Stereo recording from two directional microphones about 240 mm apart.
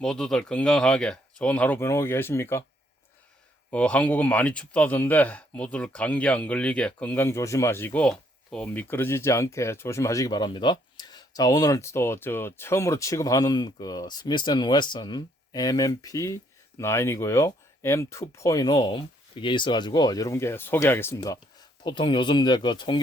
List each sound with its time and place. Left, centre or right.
0.0 s speech: centre
3.7 s speech: centre